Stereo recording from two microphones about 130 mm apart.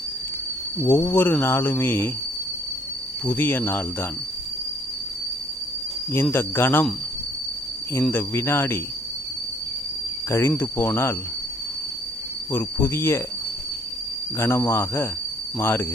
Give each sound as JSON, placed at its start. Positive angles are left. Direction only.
{"t": 0.8, "sound": "speech", "side_deg": 15}
{"t": 3.2, "sound": "speech", "side_deg": 15}
{"t": 6.3, "sound": "speech", "side_deg": 15}
{"t": 8.1, "sound": "speech", "side_deg": 20}
{"t": 10.2, "sound": "speech", "side_deg": 20}
{"t": 12.5, "sound": "speech", "side_deg": 15}
{"t": 14.3, "sound": "speech", "side_deg": 20}